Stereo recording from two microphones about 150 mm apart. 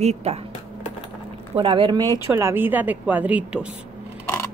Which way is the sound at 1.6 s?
35° right (ahead or behind).